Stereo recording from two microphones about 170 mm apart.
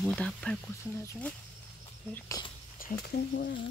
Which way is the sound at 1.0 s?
15° left (ahead or behind).